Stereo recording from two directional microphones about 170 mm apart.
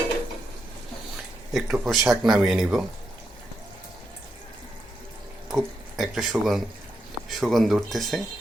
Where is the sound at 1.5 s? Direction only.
Centre (ahead or behind).